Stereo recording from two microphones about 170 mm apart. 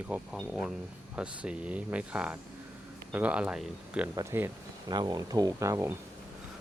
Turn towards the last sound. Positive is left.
turn(degrees=-15)  # may be behind; listen again after turning